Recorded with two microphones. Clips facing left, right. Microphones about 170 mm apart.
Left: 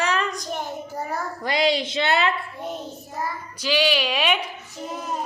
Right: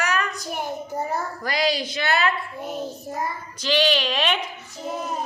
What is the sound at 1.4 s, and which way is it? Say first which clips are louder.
Speech: left 3 dB; 25° left (ahead or behind).